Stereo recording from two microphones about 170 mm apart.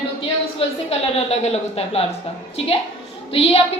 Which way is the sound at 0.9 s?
35° left (ahead or behind).